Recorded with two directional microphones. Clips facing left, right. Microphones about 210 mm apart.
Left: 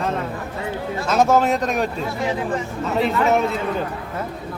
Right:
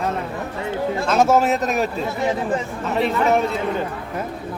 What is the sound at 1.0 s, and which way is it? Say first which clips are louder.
Speech: even; centre (ahead or behind).